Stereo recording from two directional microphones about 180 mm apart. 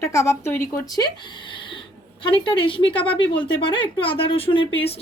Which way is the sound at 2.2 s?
25° left (ahead or behind).